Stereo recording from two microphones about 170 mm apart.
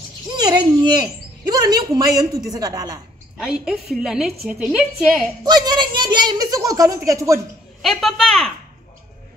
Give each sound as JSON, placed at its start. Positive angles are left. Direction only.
{"t": 0.4, "sound": "a woman's voice", "side_deg": -25}
{"t": 3.3, "sound": "a woman's voice", "side_deg": -5}
{"t": 5.4, "sound": "a woman's voice", "side_deg": -25}
{"t": 7.8, "sound": "a woman's voice", "side_deg": 0}